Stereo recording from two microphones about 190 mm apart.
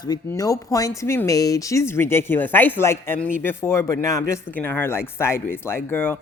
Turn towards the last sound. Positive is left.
turn(degrees=10)  # may be behind; listen again after turning